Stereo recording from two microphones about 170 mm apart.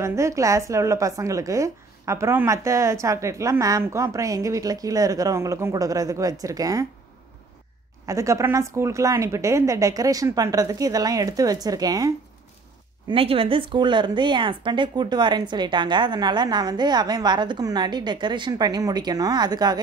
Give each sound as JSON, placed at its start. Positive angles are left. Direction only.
{"t": 0.0, "sound": "a woman's voice", "side_deg": -15}
{"t": 8.1, "sound": "a woman's voice", "side_deg": -20}
{"t": 13.1, "sound": "a woman's voice", "side_deg": -35}